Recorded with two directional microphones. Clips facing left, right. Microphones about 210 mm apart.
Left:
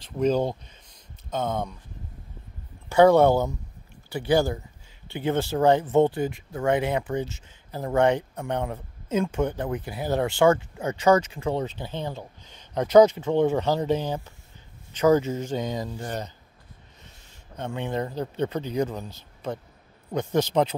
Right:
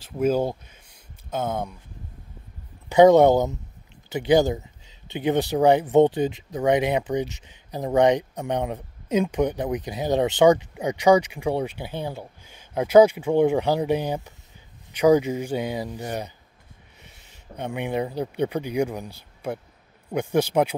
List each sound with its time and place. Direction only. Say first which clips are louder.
0.0 s speech: right 1 dB; 5° right (ahead or behind)
2.9 s speech: right 3 dB; 15° right (ahead or behind)